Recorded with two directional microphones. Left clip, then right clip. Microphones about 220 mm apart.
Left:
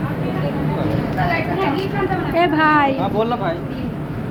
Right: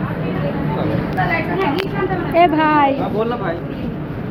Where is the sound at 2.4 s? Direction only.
5° left (ahead or behind).